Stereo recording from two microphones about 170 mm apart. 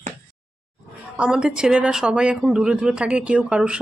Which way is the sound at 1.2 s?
5° right (ahead or behind).